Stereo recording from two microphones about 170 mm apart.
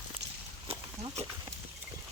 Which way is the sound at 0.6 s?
35° right (ahead or behind).